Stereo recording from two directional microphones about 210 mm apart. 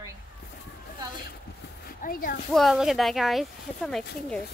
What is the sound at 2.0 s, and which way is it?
Speech, 40° left (ahead or behind).